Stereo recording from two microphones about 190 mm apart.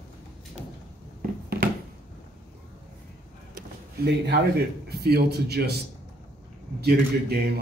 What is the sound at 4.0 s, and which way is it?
A man's voice, 55° right (ahead or behind).